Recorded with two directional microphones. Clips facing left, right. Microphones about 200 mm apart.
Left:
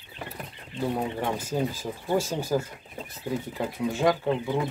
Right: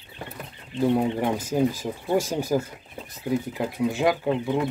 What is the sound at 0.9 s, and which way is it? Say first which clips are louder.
Speech: right 5 dB; 15° right (ahead or behind).